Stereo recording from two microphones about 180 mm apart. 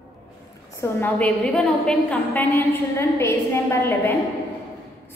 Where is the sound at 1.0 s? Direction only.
10° left (ahead or behind).